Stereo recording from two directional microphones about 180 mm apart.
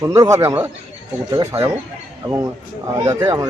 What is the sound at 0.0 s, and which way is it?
A man's voice, 15° right (ahead or behind).